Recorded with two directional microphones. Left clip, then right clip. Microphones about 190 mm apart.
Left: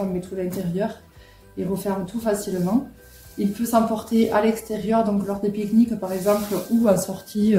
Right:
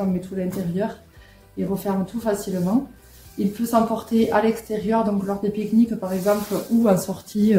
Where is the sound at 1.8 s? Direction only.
30° right (ahead or behind).